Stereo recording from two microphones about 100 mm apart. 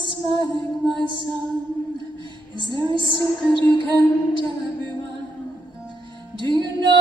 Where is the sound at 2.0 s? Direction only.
50° right (ahead or behind).